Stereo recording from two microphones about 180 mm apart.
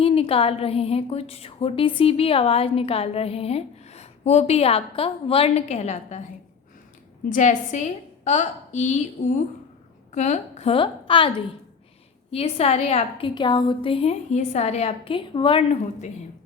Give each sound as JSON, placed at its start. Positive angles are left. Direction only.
{"t": 0.0, "sound": "a woman's voice", "side_deg": 30}
{"t": 7.3, "sound": "a woman's voice", "side_deg": 45}
{"t": 12.3, "sound": "a woman's voice", "side_deg": 35}